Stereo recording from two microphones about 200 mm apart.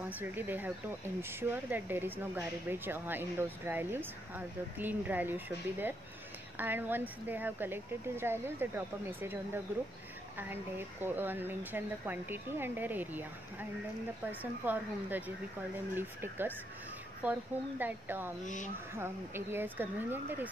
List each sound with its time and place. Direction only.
0.1 s speech: 10° right (ahead or behind)
18.4 s speech: 40° left (ahead or behind)
18.9 s speech: 10° right (ahead or behind)